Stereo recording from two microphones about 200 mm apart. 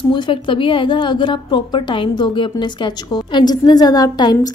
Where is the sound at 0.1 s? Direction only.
25° left (ahead or behind).